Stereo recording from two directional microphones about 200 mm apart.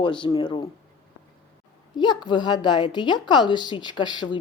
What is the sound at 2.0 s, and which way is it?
Speech, 20° left (ahead or behind).